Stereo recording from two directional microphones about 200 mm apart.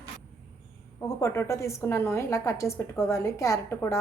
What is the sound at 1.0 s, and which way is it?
A woman's voice, 15° left (ahead or behind).